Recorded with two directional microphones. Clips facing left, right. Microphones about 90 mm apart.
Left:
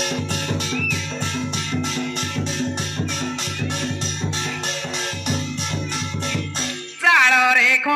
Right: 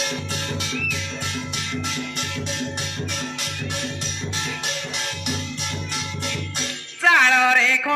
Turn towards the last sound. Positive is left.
turn(degrees=-30)  # may be behind; listen again after turning